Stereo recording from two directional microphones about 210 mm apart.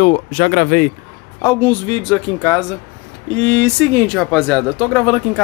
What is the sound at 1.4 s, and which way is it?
Speech, 10° left (ahead or behind).